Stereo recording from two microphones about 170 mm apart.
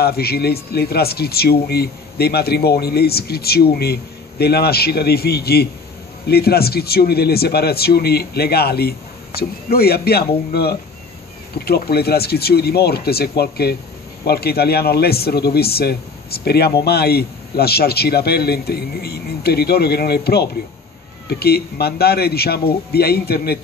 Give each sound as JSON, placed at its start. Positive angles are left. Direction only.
{"t": 0.0, "sound": "a man's voice", "side_deg": 65}